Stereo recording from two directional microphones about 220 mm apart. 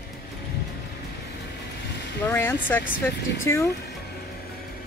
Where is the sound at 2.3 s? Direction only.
10° left (ahead or behind).